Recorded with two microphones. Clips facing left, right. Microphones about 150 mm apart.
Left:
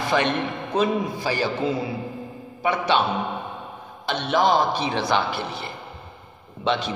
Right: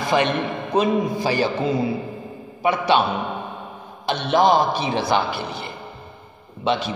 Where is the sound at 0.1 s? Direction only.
15° right (ahead or behind).